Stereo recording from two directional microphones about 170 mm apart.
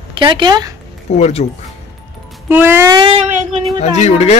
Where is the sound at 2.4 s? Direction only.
15° right (ahead or behind).